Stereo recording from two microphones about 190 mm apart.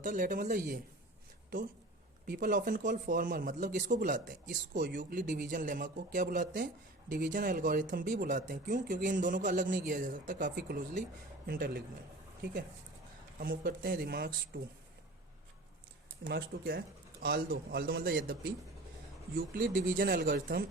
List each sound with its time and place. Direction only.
0.0 s speech: 45° right (ahead or behind)
2.2 s speech: 45° right (ahead or behind)
13.4 s speech: 50° right (ahead or behind)
16.2 s speech: 55° right (ahead or behind)
19.4 s speech: 50° right (ahead or behind)